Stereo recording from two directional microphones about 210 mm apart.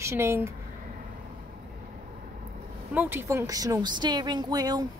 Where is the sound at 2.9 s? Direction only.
10° right (ahead or behind).